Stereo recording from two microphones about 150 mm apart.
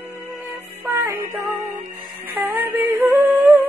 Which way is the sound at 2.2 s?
15° right (ahead or behind).